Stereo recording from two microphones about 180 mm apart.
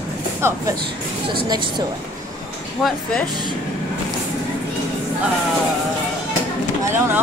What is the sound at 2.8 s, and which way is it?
Speech, centre (ahead or behind).